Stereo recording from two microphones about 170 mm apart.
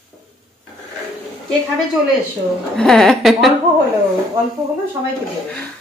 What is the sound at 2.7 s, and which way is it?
Speech, centre (ahead or behind).